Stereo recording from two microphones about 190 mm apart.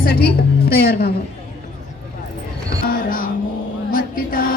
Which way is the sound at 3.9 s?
50° left (ahead or behind).